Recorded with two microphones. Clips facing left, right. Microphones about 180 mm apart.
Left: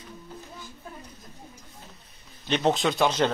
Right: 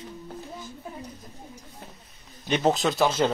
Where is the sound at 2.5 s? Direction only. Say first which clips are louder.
Right 1 dB; 5° right (ahead or behind).